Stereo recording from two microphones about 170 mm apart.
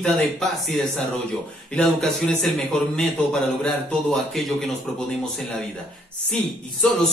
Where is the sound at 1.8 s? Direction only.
5° left (ahead or behind).